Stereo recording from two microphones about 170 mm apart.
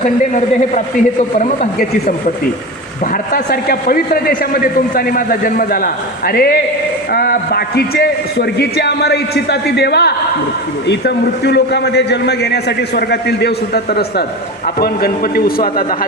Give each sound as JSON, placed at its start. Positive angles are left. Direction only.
{"t": 1.4, "sound": "speech", "side_deg": 45}
{"t": 3.3, "sound": "a man's voice", "side_deg": 60}